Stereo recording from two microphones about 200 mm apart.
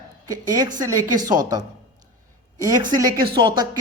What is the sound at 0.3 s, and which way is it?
Speech, 20° right (ahead or behind).